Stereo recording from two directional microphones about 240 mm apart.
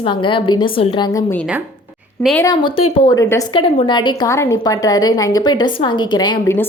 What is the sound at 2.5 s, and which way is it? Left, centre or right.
A woman's voice, centre.